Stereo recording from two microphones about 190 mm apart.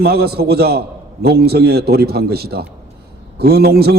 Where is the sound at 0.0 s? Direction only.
55° right (ahead or behind).